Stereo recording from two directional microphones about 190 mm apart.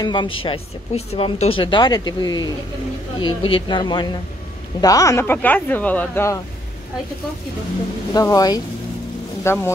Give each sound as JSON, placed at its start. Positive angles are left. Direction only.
{"t": 0.0, "sound": "speech", "side_deg": 25}
{"t": 8.1, "sound": "speech", "side_deg": 20}